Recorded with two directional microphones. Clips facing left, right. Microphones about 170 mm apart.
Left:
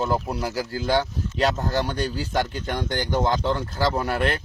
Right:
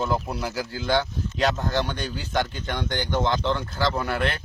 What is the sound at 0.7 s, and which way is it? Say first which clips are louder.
Speech: left 1 dB; 40° left (ahead or behind).